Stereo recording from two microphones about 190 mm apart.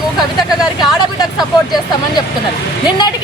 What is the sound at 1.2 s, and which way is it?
Speech, 20° left (ahead or behind).